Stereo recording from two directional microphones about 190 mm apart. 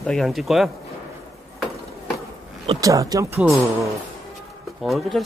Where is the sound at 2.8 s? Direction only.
20° right (ahead or behind).